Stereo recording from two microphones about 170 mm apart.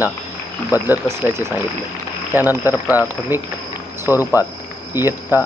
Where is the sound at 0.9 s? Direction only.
15° right (ahead or behind).